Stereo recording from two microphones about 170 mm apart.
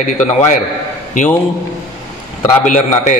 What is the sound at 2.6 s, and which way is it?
Speech, 45° left (ahead or behind).